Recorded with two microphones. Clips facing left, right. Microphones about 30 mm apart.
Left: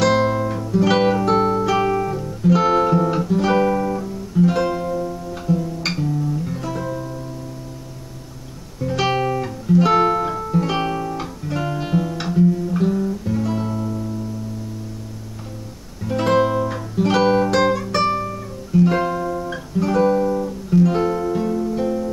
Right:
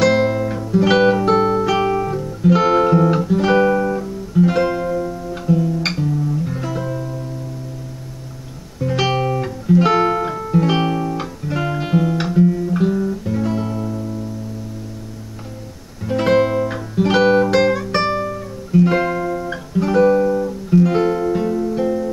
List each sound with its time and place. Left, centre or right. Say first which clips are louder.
0.1 s music: right 1 dB; centre
2.0 s guitar: right 2 dB; centre
2.4 s music: right 2 dB; centre
5.9 s music: right 2 dB; centre
8.8 s music: right 2 dB; centre
9.1 s music: right 1 dB; centre
9.4 s music: right 2 dB; centre
11.1 s guitar: right 2 dB; centre
12.4 s music: right 1 dB; centre
16.0 s music: right 2 dB; centre